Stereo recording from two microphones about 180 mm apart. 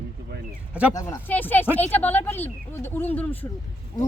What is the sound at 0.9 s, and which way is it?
Speech, 10° left (ahead or behind).